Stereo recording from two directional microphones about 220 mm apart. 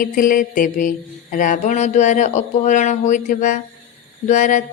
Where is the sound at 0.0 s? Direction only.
40° left (ahead or behind).